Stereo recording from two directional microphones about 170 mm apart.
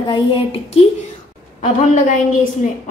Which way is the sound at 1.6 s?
50° left (ahead or behind).